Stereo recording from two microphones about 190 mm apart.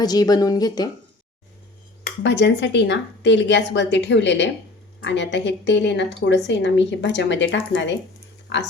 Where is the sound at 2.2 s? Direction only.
70° left (ahead or behind).